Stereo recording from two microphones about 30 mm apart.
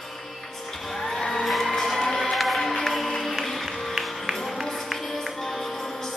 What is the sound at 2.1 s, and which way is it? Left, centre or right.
Music, centre.